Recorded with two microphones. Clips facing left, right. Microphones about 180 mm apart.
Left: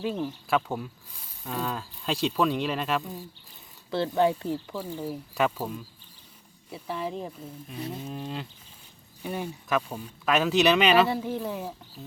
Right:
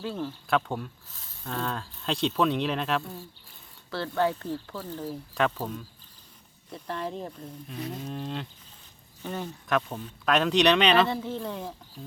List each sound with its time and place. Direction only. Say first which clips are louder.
0.0 s speech: left 3 dB; 15° left (ahead or behind)
0.5 s speech: even; 5° left (ahead or behind)
3.0 s speech: left 2 dB; 15° left (ahead or behind)